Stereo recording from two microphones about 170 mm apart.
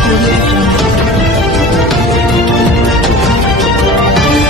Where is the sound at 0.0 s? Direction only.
Centre (ahead or behind).